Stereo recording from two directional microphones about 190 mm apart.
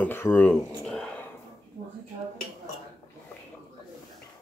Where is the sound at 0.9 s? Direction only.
5° left (ahead or behind).